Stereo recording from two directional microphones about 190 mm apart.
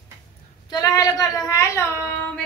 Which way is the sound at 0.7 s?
20° left (ahead or behind).